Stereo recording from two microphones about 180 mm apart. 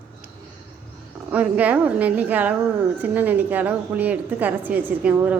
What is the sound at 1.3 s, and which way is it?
A woman's voice, 10° right (ahead or behind).